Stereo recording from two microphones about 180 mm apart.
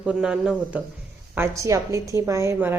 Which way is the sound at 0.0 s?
5° right (ahead or behind).